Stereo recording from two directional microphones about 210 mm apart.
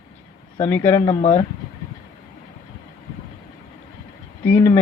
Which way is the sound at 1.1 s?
25° left (ahead or behind).